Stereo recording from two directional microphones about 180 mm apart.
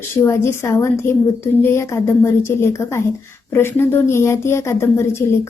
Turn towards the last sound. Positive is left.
turn(degrees=15)  # may be behind; listen again after turning